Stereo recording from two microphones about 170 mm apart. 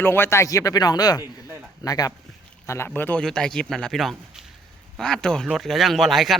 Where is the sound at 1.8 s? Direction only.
20° left (ahead or behind).